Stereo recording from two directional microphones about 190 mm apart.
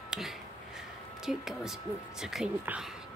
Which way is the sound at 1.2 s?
Centre (ahead or behind).